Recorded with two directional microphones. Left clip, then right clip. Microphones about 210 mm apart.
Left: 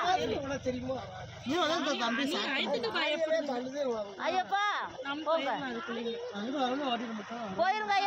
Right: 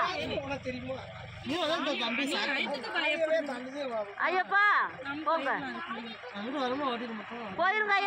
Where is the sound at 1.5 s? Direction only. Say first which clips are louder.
Even; 40° left (ahead or behind).